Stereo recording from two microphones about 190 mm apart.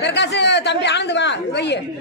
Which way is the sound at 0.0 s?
65° left (ahead or behind).